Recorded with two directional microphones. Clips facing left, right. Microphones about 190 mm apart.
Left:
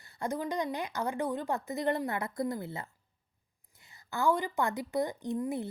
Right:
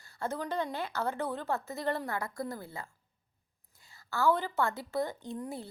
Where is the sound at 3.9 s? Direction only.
15° left (ahead or behind).